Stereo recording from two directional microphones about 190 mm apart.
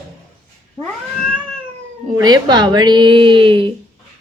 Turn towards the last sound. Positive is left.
turn(degrees=-25)  # may be behind; listen again after turning